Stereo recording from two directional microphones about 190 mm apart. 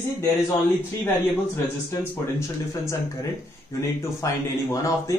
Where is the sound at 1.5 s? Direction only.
15° left (ahead or behind).